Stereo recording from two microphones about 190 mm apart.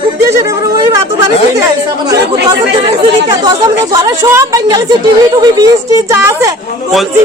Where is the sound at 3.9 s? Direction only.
20° right (ahead or behind).